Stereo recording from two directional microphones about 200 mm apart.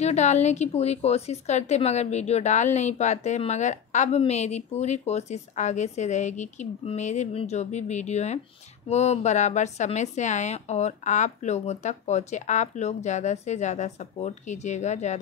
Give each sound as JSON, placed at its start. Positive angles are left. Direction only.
{"t": 0.0, "sound": "a woman's voice", "side_deg": 35}